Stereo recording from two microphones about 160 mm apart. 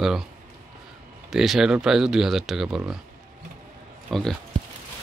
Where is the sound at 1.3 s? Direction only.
Centre (ahead or behind).